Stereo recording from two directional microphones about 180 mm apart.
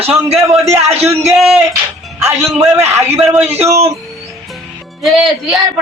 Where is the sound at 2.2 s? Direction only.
15° right (ahead or behind).